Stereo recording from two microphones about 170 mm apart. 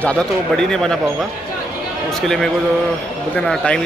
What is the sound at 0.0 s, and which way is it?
Speech, 5° left (ahead or behind).